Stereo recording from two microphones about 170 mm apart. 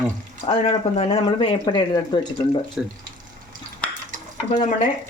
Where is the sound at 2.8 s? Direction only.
5° right (ahead or behind).